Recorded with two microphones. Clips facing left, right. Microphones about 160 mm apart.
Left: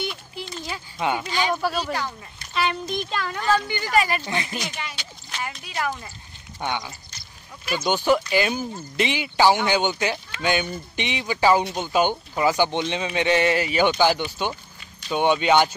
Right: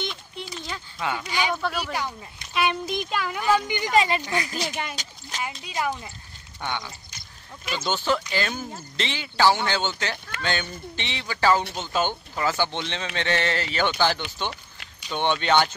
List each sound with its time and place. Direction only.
0.0 s a sound: 5° left (ahead or behind)
0.9 s speech: 20° left (ahead or behind)
1.2 s a child's voice: 15° right (ahead or behind)
1.5 s speech: 10° left (ahead or behind)
1.8 s a child's voice: 10° right (ahead or behind)
4.7 s speech: 45° right (ahead or behind)
5.4 s a child's voice: 20° right (ahead or behind)
6.6 s speech: 15° left (ahead or behind)